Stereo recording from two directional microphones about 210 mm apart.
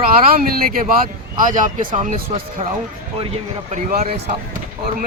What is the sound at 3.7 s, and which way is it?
Speech, 35° right (ahead or behind).